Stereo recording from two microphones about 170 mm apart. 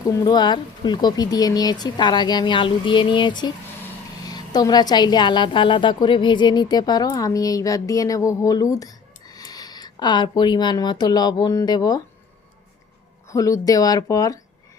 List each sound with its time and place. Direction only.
0.1 s a woman's voice: 25° left (ahead or behind)
13.2 s a woman's voice: 20° left (ahead or behind)